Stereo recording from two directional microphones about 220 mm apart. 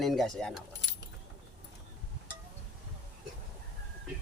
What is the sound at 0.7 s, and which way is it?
Keys jangling, 55° left (ahead or behind).